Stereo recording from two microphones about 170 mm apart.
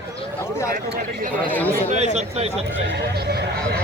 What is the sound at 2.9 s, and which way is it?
Speech, 75° right (ahead or behind).